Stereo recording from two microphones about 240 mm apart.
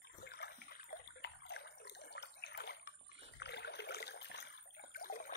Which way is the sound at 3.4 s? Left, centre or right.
Left.